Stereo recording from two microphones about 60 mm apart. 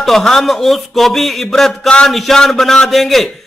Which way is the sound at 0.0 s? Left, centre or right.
Centre.